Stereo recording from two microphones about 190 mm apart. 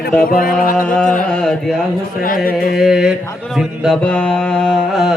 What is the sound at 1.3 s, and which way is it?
Mantra, 5° left (ahead or behind).